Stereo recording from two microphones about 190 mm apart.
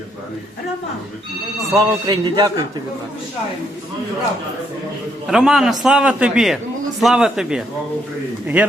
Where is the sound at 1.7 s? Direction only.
20° right (ahead or behind).